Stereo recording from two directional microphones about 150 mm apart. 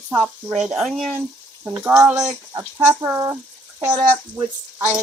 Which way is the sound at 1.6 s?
10° right (ahead or behind).